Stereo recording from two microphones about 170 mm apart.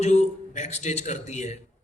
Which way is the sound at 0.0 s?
45° left (ahead or behind).